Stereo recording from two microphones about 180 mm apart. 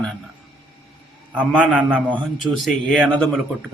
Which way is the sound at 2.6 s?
Centre (ahead or behind).